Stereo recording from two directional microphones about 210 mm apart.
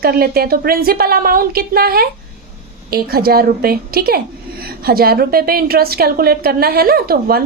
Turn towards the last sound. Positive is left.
turn(degrees=-45)  # may be behind; listen again after turning